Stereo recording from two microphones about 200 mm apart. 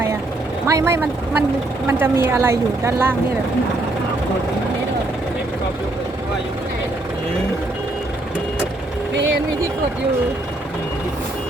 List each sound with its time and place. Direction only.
0.7 s speech: 15° right (ahead or behind)